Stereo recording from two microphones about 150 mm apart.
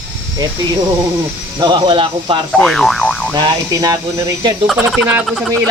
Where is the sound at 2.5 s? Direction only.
5° left (ahead or behind).